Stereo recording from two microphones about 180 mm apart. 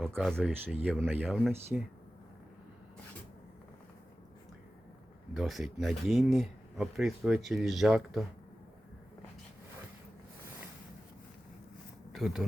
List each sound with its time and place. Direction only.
0.2 s speech: centre (ahead or behind)
5.3 s speech: centre (ahead or behind)
12.1 s speech: centre (ahead or behind)